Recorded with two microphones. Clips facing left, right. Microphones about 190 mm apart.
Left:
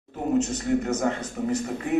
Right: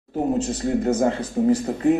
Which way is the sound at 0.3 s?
35° right (ahead or behind).